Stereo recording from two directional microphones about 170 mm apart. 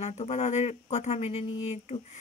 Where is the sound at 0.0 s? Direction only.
40° left (ahead or behind).